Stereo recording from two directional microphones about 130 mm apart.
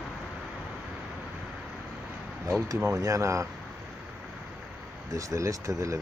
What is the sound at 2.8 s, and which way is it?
Speech, 20° right (ahead or behind).